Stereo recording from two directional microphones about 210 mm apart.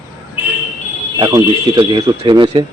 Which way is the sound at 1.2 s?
20° right (ahead or behind).